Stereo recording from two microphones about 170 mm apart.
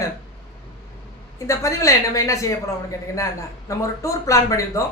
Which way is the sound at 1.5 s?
20° left (ahead or behind).